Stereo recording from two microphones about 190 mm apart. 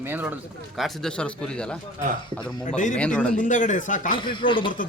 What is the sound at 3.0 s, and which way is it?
Speech, 5° left (ahead or behind).